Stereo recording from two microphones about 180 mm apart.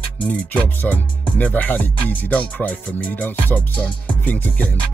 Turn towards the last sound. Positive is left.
turn(degrees=10)  # may be behind; listen again after turning